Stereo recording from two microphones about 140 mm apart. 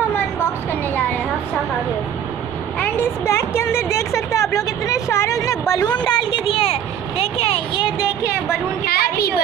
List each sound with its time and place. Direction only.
2.8 s a woman's voice: 20° left (ahead or behind); by 7.9 s 40° left (ahead or behind)
8.8 s a woman's voice: 90° left